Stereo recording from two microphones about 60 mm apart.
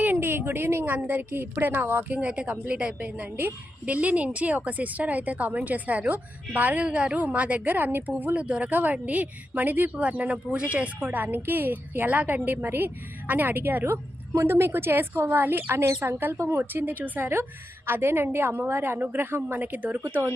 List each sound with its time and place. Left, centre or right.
0.0 s a sound: right
0.9 s a woman's voice: right
2.1 s a woman's voice: centre